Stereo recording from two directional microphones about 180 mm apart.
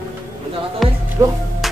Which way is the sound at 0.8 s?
Centre (ahead or behind).